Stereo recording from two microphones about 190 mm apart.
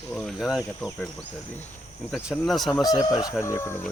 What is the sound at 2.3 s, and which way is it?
Speech, centre (ahead or behind).